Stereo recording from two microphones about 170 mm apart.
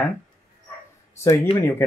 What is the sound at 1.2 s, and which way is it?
Speech, 15° left (ahead or behind).